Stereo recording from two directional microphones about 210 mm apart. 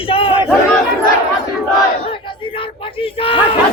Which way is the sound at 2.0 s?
25° left (ahead or behind).